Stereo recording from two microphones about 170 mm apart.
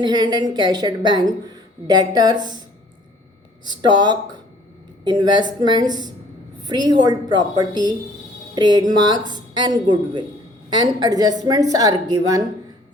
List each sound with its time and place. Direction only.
0.0 s a woman's voice: 25° right (ahead or behind)
3.7 s a woman's voice: 25° right (ahead or behind)